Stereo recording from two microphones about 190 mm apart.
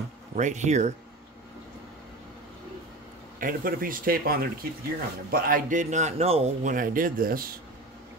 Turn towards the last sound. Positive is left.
turn(degrees=-50)  # may be behind; listen again after turning